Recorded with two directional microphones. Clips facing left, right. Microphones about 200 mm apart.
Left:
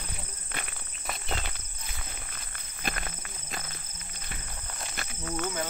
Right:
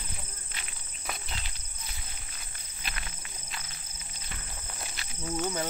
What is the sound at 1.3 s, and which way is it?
Insect, 55° left (ahead or behind).